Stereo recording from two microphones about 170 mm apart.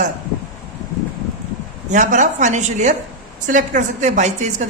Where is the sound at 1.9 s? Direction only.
45° right (ahead or behind).